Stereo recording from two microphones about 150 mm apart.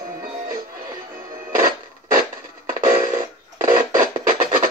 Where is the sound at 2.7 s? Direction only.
60° right (ahead or behind).